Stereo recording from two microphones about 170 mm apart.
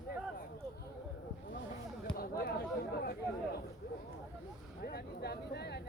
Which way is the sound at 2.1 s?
60° left (ahead or behind).